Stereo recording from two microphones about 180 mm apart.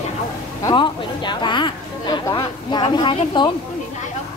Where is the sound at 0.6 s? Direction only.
25° left (ahead or behind).